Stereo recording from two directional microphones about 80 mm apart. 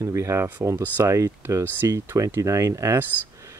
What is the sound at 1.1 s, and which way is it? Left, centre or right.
Speech, right.